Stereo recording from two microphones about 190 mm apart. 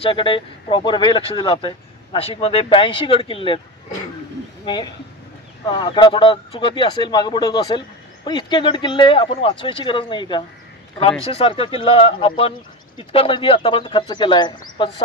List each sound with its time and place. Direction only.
0.0 s speech: 25° left (ahead or behind)
4.7 s speech: 25° left (ahead or behind)